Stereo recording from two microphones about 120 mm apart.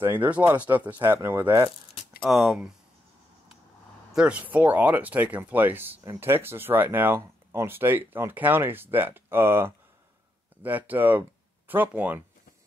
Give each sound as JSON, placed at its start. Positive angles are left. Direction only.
{"t": 0.0, "sound": "speech", "side_deg": -15}
{"t": 2.2, "sound": "speech", "side_deg": 0}
{"t": 4.1, "sound": "speech", "side_deg": -10}